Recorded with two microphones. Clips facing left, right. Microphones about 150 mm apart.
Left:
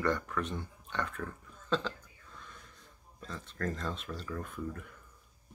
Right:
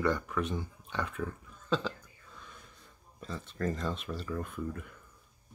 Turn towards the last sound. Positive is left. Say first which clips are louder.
# right 2 dB
turn(degrees=0)  # may be behind; listen again after turning